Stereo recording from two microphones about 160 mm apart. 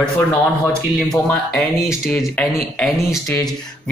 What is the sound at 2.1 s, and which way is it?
Speech, 10° left (ahead or behind).